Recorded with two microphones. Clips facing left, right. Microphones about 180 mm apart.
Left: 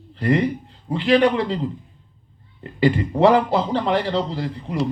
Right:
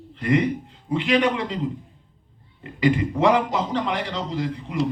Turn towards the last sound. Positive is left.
turn(degrees=35)  # may be behind; listen again after turning